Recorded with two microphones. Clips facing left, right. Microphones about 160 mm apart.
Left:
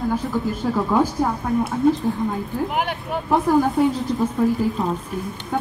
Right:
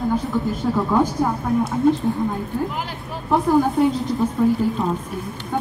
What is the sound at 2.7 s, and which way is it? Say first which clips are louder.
Speech: left 5 dB; 65° left (ahead or behind).